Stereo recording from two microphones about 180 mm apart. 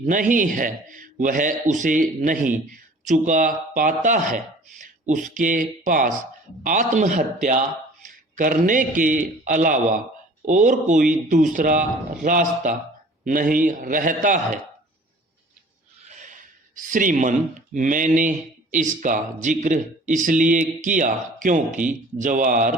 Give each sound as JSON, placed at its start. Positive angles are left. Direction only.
{"t": 0.0, "sound": "a man's voice", "side_deg": -45}
{"t": 16.0, "sound": "a man's voice", "side_deg": -45}